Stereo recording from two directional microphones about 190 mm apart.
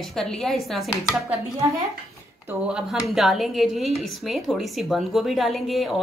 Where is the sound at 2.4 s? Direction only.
5° right (ahead or behind).